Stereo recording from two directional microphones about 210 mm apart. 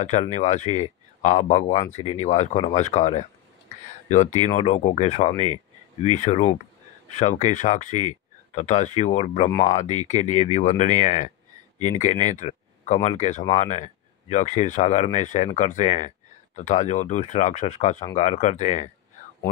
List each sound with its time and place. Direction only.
0.0 s speech: 35° left (ahead or behind)